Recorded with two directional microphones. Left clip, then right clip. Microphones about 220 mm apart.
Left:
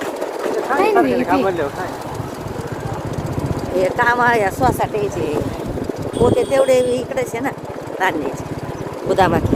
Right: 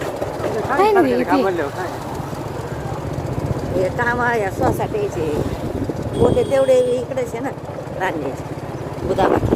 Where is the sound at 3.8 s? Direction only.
20° left (ahead or behind).